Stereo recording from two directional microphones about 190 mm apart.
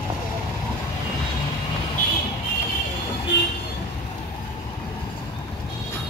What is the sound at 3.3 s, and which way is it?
Vehicle, 65° left (ahead or behind).